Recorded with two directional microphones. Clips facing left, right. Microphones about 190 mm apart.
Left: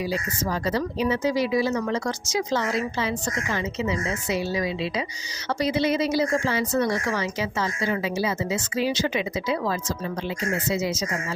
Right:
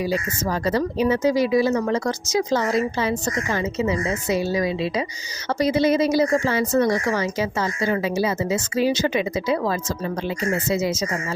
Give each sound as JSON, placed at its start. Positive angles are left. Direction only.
{"t": 0.6, "sound": "speech", "side_deg": -45}